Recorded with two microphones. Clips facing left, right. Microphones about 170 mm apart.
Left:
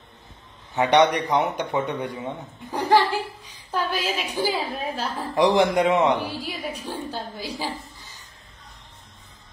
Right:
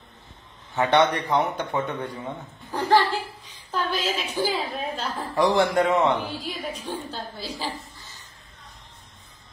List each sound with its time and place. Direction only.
0.7 s a woman's voice: 15° left (ahead or behind)